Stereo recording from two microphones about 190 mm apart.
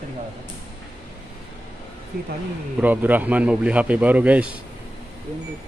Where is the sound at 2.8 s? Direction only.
10° right (ahead or behind).